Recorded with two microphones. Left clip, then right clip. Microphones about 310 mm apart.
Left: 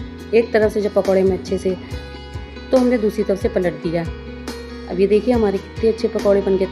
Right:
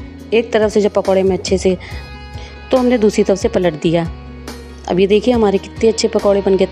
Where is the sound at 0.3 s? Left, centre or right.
Right.